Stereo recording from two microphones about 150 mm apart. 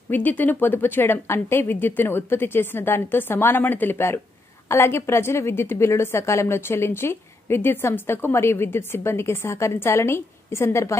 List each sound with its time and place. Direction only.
0.1 s a woman's voice: 10° left (ahead or behind)